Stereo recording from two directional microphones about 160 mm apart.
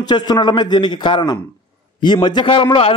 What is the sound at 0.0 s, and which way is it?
A man's voice, 25° left (ahead or behind).